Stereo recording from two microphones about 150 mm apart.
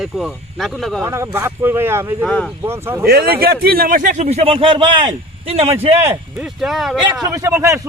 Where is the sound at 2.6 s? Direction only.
15° right (ahead or behind).